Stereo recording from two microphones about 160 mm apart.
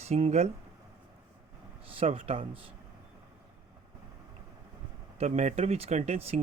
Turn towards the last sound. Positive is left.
turn(degrees=-40)  # may be behind; listen again after turning